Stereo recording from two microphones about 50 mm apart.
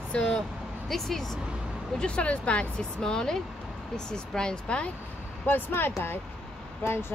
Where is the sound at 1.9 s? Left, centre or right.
Left.